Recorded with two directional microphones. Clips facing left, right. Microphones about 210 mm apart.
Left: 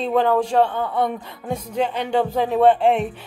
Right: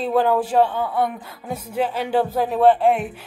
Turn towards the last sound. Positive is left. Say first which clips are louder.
# even
turn(degrees=0)  # may be behind; listen again after turning